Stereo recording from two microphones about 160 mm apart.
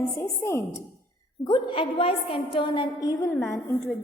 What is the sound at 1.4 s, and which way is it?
A woman's voice, 30° left (ahead or behind).